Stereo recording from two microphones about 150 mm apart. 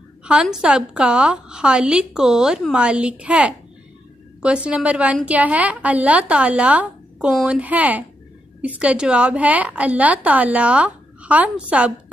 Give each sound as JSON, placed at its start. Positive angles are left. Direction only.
{"t": 0.2, "sound": "a woman's voice", "side_deg": -5}